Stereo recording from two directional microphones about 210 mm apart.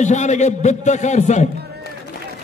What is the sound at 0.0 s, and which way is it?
A man's voice, 35° left (ahead or behind).